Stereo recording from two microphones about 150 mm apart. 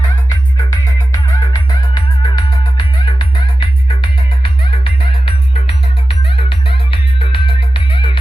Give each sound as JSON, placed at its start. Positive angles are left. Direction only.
{"t": 0.5, "sound": "music", "side_deg": 25}